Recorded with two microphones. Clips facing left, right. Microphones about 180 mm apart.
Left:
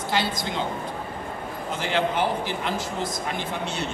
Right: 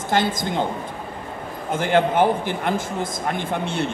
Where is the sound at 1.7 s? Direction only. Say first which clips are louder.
Right 6 dB; 50° right (ahead or behind).